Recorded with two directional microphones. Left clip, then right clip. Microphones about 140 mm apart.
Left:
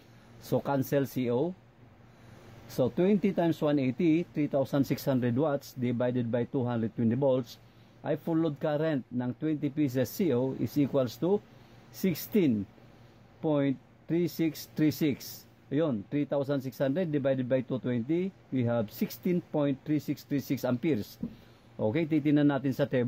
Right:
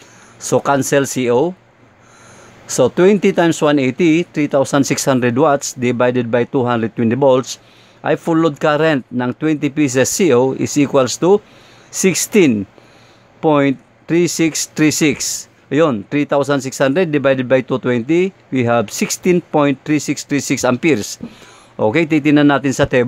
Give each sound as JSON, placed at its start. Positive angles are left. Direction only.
{"t": 0.4, "sound": "speech", "side_deg": -40}
{"t": 2.7, "sound": "speech", "side_deg": -50}